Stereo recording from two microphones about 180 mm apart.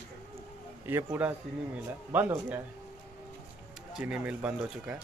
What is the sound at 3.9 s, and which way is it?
A man's voice, 5° right (ahead or behind).